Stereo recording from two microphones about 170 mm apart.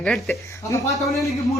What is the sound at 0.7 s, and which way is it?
Speech, 20° left (ahead or behind).